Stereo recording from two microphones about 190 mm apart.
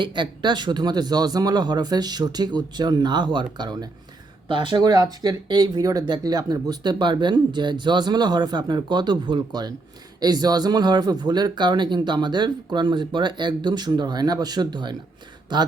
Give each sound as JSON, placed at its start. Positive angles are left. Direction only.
{"t": 0.0, "sound": "speech", "side_deg": -25}